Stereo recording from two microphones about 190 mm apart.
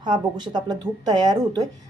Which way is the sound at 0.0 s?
25° right (ahead or behind).